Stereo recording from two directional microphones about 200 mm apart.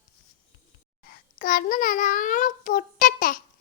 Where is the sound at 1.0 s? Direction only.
45° left (ahead or behind).